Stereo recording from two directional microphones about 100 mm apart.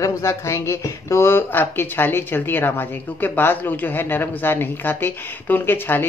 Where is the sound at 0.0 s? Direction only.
30° left (ahead or behind).